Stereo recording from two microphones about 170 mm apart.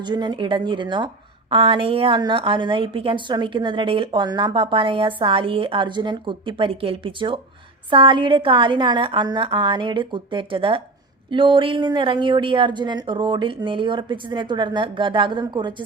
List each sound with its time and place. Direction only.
0.0 s a woman's voice: 25° right (ahead or behind)